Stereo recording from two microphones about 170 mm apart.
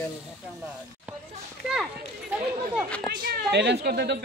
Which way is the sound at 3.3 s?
80° right.